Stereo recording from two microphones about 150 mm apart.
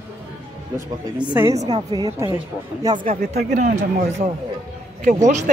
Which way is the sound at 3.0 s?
60° right (ahead or behind).